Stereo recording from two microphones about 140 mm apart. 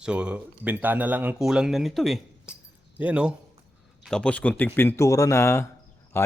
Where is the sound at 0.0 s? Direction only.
5° right (ahead or behind).